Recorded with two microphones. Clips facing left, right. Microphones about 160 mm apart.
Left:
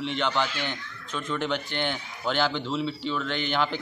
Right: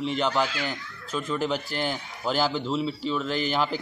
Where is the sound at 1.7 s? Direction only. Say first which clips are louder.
Right 1 dB; 35° right (ahead or behind).